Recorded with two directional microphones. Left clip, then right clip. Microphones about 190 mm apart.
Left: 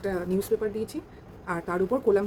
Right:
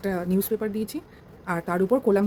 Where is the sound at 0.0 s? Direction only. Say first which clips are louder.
Right 1 dB; 50° right (ahead or behind).